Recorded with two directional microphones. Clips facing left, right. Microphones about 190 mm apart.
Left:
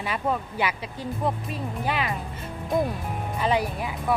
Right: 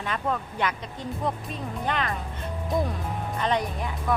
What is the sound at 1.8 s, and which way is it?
Speech, 5° left (ahead or behind).